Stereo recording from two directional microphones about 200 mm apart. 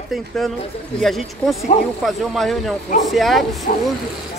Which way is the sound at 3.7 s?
45° left (ahead or behind).